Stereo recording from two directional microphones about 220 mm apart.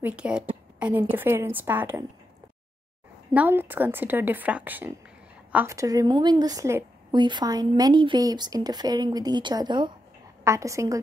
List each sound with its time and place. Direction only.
0.0 s a woman's voice: 5° right (ahead or behind)
3.3 s a woman's voice: 10° right (ahead or behind)